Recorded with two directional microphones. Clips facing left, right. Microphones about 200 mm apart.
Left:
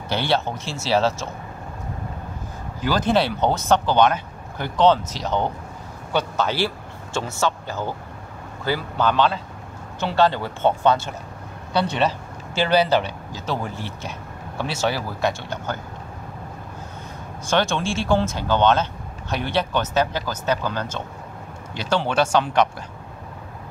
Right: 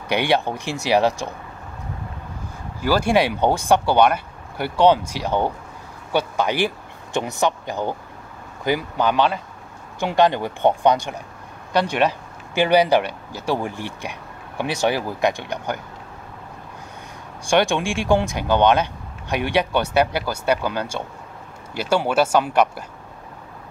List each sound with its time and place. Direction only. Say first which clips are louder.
0.1 s speech: right 3 dB; 15° right (ahead or behind)
2.8 s speech: right 2 dB; 10° right (ahead or behind)
17.5 s speech: right 3 dB; 15° right (ahead or behind)